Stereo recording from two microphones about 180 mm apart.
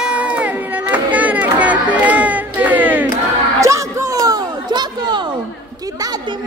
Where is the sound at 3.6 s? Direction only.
15° right (ahead or behind).